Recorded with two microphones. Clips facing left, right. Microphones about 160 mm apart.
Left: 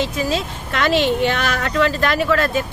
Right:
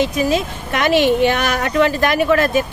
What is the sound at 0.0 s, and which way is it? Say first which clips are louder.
A woman's voice: right 4 dB; 15° right (ahead or behind).